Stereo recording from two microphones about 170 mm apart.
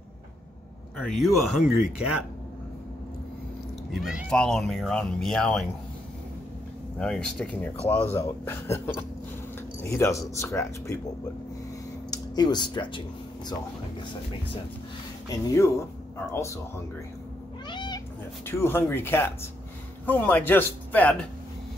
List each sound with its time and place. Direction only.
0.9 s speech: centre (ahead or behind)
3.9 s speech: 5° right (ahead or behind)
7.0 s speech: 5° left (ahead or behind)
12.1 s speech: 25° left (ahead or behind)
15.2 s speech: 15° left (ahead or behind)
17.6 s cat: 25° left (ahead or behind)
18.4 s speech: 15° left (ahead or behind)